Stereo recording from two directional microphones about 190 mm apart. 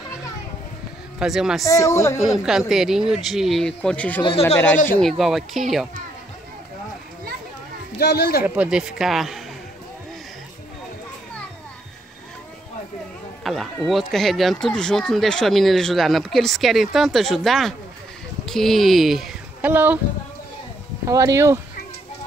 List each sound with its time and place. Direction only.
1.2 s speech: centre (ahead or behind)
1.6 s speech: 15° left (ahead or behind)
2.2 s speech: centre (ahead or behind)
4.2 s speech: 30° left (ahead or behind)
5.0 s speech: centre (ahead or behind)
8.0 s speech: 60° left (ahead or behind)
8.5 s speech: 5° right (ahead or behind)
13.4 s speech: centre (ahead or behind)
21.0 s speech: 15° right (ahead or behind)